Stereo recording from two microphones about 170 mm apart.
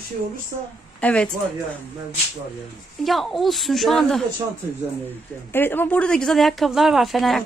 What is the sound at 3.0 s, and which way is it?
Speech, centre (ahead or behind).